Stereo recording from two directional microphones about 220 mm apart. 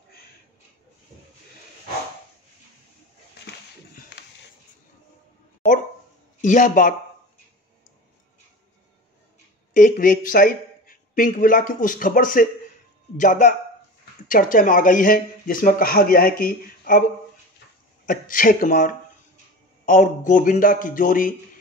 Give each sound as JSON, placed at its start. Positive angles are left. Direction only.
{"t": 6.4, "sound": "speech", "side_deg": 35}
{"t": 9.8, "sound": "speech", "side_deg": 40}
{"t": 18.0, "sound": "speech", "side_deg": 40}